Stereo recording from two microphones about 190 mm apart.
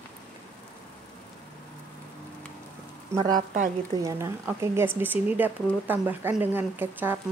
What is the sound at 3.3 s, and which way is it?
Speech, 45° right (ahead or behind).